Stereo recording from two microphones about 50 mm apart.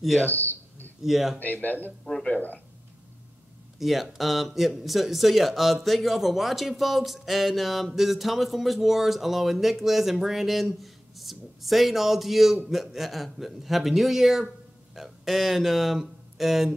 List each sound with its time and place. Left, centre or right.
0.2 s a sound: left
1.0 s a man's voice: centre
1.4 s speech: left
3.8 s a man's voice: centre